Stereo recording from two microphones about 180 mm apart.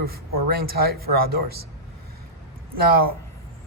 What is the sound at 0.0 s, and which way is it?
Speech, 55° right (ahead or behind).